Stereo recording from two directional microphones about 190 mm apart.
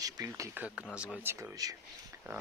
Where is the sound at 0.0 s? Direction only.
15° right (ahead or behind).